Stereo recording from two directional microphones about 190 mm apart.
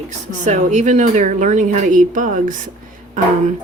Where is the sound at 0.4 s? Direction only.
40° right (ahead or behind).